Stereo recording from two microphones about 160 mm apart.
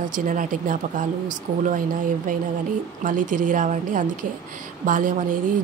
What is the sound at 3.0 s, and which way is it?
Speech, 55° right (ahead or behind).